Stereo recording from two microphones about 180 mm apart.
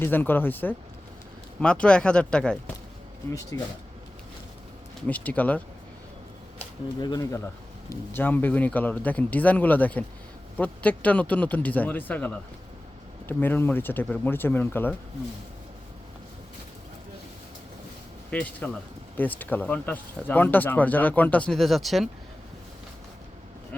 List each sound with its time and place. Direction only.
0.0 s speech: 10° left (ahead or behind)
3.5 s speech: 20° left (ahead or behind)
5.0 s speech: 10° left (ahead or behind)
7.0 s speech: 20° left (ahead or behind)
18.3 s speech: 10° left (ahead or behind)